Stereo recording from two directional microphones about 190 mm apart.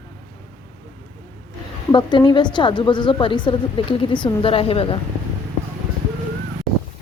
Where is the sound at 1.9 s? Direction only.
25° left (ahead or behind).